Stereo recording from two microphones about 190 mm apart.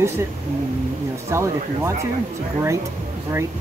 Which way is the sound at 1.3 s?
15° right (ahead or behind).